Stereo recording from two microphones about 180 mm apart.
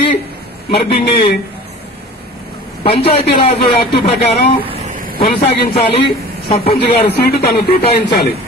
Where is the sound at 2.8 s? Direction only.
30° left (ahead or behind).